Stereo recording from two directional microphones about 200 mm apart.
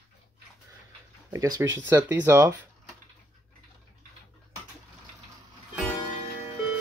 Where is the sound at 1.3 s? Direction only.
15° right (ahead or behind).